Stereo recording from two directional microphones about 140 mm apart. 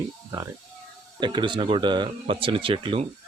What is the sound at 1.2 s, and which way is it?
Speech, 35° right (ahead or behind).